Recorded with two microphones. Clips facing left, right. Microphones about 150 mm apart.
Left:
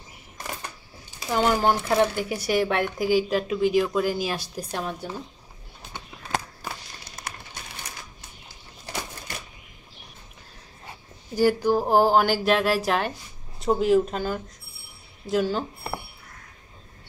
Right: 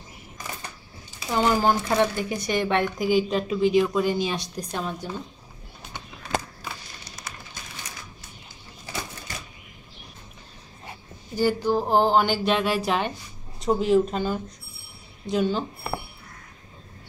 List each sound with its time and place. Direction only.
1.3 s speech: 5° left (ahead or behind)
6.6 s a sound: 55° left (ahead or behind)
11.3 s speech: 10° left (ahead or behind)